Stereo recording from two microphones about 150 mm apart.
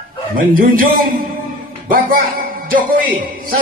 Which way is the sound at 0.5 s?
70° right (ahead or behind).